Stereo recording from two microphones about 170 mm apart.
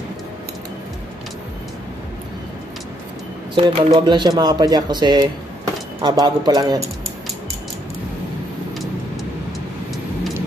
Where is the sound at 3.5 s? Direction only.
30° right (ahead or behind).